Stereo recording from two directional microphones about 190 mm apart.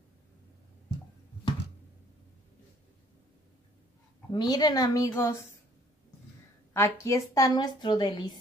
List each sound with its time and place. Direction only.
4.3 s a woman's voice: 20° left (ahead or behind)
6.7 s a woman's voice: 15° left (ahead or behind)